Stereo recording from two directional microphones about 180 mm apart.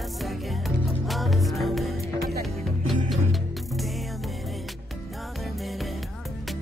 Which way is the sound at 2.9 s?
Centre (ahead or behind).